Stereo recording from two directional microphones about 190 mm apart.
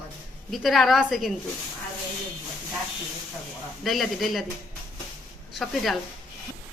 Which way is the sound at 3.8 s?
Centre (ahead or behind).